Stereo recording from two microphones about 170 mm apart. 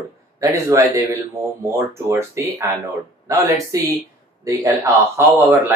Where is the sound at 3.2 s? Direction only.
15° right (ahead or behind).